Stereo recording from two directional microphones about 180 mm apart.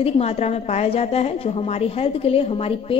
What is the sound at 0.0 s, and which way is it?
A woman's voice, 35° left (ahead or behind).